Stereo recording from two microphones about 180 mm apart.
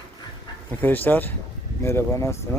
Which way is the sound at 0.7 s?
10° left (ahead or behind).